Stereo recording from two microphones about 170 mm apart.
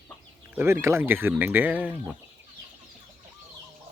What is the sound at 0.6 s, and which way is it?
Speech, 15° right (ahead or behind).